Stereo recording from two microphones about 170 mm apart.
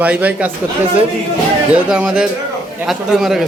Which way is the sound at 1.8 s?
5° right (ahead or behind).